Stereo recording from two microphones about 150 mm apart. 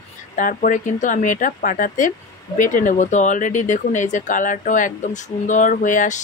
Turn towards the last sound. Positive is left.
turn(degrees=55)  # may be behind; listen again after turning